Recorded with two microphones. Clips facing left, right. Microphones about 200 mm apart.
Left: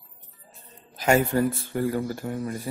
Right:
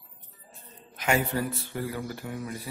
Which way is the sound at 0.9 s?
45° left (ahead or behind).